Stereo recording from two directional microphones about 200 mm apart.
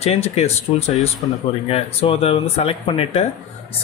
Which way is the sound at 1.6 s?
30° left (ahead or behind).